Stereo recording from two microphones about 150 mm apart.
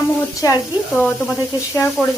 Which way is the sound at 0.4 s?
25° left (ahead or behind).